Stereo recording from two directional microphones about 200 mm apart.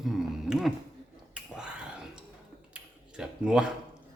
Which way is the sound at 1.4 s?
5° right (ahead or behind).